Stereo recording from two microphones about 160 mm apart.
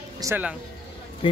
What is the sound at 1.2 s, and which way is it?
Speech, 30° left (ahead or behind).